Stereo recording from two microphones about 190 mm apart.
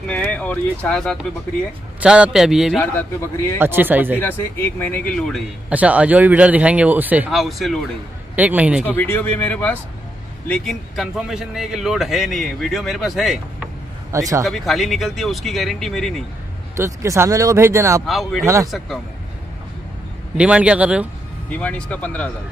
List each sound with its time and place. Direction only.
0.1 s a man's voice: 5° left (ahead or behind)
2.8 s speech: 10° left (ahead or behind)
3.5 s speech: 10° right (ahead or behind)
4.2 s speech: 10° left (ahead or behind)
5.7 s speech: 5° right (ahead or behind)
8.8 s a man's voice: 10° left (ahead or behind)
14.1 s speech: 15° right (ahead or behind)
14.4 s a man's voice: centre (ahead or behind)
16.7 s speech: 15° right (ahead or behind)
18.0 s a man's voice: centre (ahead or behind)
18.4 s speech: 15° right (ahead or behind)
20.3 s speech: 5° right (ahead or behind)
21.5 s speech: 5° left (ahead or behind)